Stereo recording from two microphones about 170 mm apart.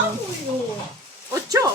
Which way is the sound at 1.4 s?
20° right (ahead or behind).